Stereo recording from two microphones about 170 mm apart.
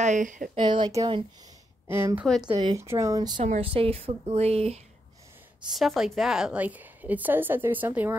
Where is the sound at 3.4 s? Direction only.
40° right (ahead or behind).